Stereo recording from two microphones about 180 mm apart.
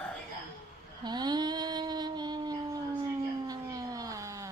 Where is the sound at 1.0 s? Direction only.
25° right (ahead or behind).